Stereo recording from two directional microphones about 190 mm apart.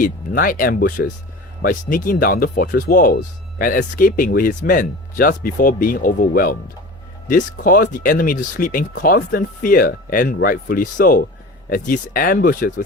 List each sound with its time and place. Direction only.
0.0 s speech: 50° left (ahead or behind)